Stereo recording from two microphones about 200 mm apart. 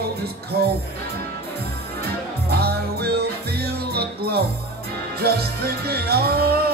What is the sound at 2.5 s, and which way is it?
Music, 50° right (ahead or behind).